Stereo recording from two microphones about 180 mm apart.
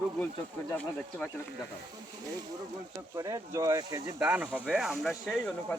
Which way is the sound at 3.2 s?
15° right (ahead or behind).